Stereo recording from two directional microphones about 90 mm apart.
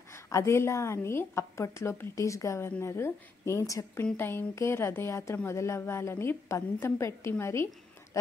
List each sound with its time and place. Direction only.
0.1 s a woman's voice: 30° left (ahead or behind)
4.0 s a woman's voice: 25° left (ahead or behind)